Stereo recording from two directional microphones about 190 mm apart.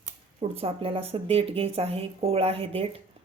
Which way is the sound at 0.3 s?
30° right (ahead or behind).